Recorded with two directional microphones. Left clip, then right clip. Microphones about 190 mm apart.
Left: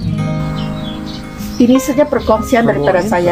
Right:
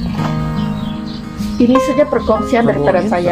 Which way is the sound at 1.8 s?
15° right (ahead or behind).